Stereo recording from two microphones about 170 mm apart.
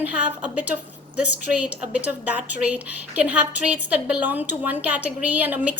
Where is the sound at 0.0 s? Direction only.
10° right (ahead or behind).